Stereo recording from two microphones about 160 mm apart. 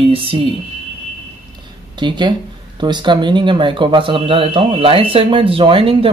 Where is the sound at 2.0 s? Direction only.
30° right (ahead or behind).